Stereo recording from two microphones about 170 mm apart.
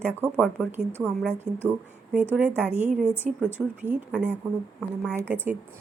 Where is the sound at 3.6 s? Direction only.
5° right (ahead or behind).